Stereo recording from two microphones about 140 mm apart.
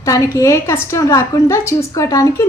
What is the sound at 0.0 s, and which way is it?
A woman's voice, 25° left (ahead or behind).